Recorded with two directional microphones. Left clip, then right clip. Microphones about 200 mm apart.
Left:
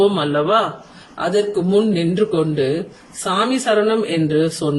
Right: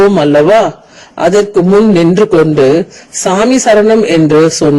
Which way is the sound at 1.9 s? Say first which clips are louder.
Right 11 dB; 40° right (ahead or behind).